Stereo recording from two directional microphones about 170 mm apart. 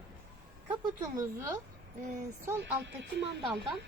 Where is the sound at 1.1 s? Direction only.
20° right (ahead or behind).